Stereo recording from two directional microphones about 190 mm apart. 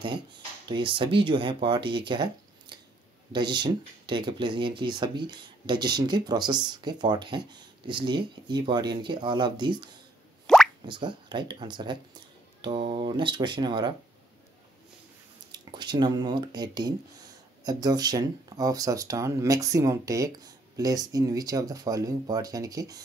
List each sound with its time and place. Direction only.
0.7 s speech: 25° right (ahead or behind)
3.3 s speech: 25° right (ahead or behind)
10.4 s plop: centre (ahead or behind)
10.9 s speech: 25° right (ahead or behind)
15.5 s speech: 25° right (ahead or behind)